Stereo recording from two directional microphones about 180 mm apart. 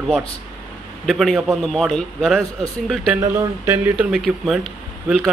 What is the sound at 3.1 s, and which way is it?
A man's voice, 15° right (ahead or behind).